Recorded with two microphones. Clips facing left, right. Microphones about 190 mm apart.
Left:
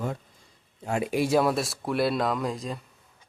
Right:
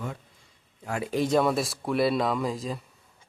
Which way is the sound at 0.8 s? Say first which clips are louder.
Left 4 dB; 25° left (ahead or behind).